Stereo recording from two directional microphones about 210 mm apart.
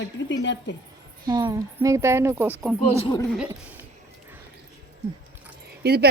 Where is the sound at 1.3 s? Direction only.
20° right (ahead or behind).